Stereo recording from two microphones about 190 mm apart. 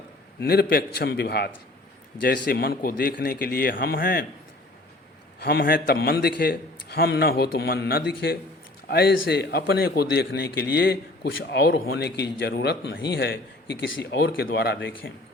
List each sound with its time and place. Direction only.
0.3 s a man's voice: 55° left (ahead or behind)
5.4 s a man's voice: 55° left (ahead or behind)